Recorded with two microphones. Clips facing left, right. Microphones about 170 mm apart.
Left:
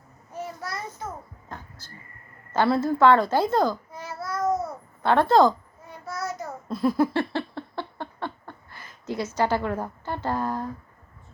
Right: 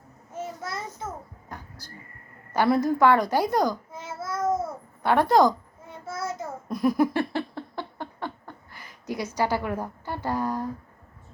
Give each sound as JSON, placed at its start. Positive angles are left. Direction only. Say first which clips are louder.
{"t": 0.3, "sound": "child singing", "louder": "even", "side_deg": -20}
{"t": 1.5, "sound": "a sound", "louder": "even", "side_deg": -15}
{"t": 2.5, "sound": "babbling", "louder": "even", "side_deg": -15}
{"t": 5.0, "sound": "a woman's voice", "louder": "left 1 dB", "side_deg": -15}
{"t": 6.1, "sound": "babbling", "louder": "even", "side_deg": -25}